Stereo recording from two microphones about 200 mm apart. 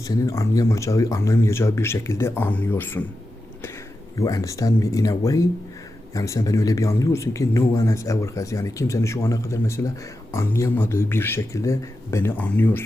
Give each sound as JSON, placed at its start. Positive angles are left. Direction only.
{"t": 0.1, "sound": "speech", "side_deg": 15}
{"t": 4.2, "sound": "speech", "side_deg": 15}